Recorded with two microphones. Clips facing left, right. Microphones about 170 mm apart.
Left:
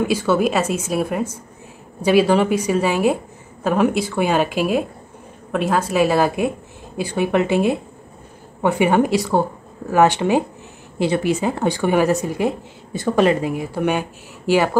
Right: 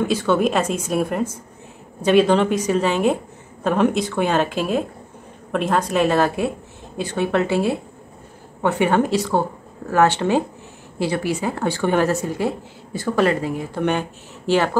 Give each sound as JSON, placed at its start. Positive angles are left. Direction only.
{"t": 0.0, "sound": "a woman's voice", "side_deg": 10}